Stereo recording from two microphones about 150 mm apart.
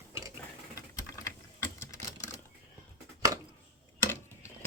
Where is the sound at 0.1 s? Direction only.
20° right (ahead or behind).